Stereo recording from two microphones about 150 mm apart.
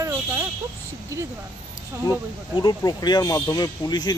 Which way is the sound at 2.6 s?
25° left (ahead or behind).